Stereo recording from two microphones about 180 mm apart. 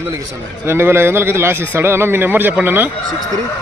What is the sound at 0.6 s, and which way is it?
Speech, 15° right (ahead or behind).